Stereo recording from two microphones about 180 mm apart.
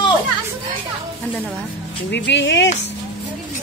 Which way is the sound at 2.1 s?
80° left.